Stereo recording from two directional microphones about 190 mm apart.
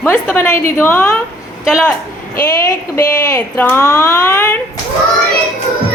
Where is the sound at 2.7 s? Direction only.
10° left (ahead or behind).